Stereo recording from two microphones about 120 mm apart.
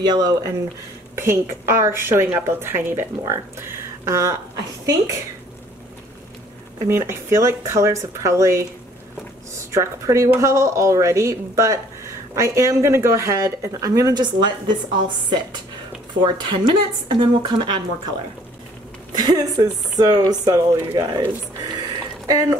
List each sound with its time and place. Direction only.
0.0 s a woman's voice: 35° right (ahead or behind)
6.9 s a woman's voice: 20° right (ahead or behind); by 17.8 s 40° right (ahead or behind)
19.1 s speech: 35° right (ahead or behind)